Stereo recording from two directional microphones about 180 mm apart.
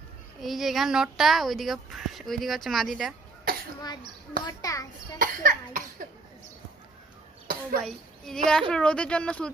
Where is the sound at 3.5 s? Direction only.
55° right (ahead or behind).